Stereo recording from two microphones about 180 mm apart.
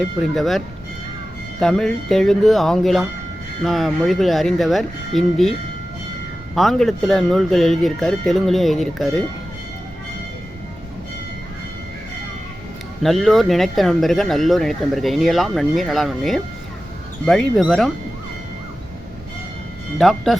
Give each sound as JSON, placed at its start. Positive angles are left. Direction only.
{"t": 0.0, "sound": "speech", "side_deg": 0}
{"t": 6.6, "sound": "speech", "side_deg": 0}
{"t": 13.0, "sound": "speech", "side_deg": 0}
{"t": 20.0, "sound": "speech", "side_deg": 0}